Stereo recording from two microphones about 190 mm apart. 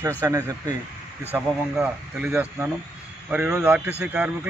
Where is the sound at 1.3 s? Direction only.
10° right (ahead or behind).